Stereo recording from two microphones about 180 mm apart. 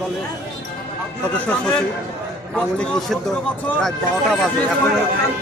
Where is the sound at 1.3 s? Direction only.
10° left (ahead or behind).